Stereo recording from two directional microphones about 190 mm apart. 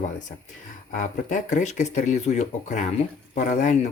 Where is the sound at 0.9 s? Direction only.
40° left (ahead or behind).